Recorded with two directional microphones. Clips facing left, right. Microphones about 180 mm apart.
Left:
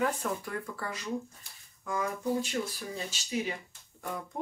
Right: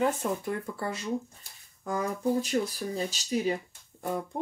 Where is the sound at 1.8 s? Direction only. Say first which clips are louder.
Right 3 dB; 35° right (ahead or behind).